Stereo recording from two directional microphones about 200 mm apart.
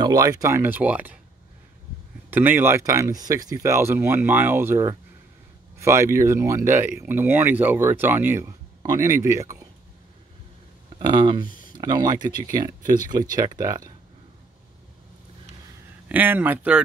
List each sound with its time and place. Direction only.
0.0 s speech: 20° right (ahead or behind)
2.3 s speech: 10° right (ahead or behind)
11.0 s speech: 25° right (ahead or behind)
16.1 s speech: 10° right (ahead or behind)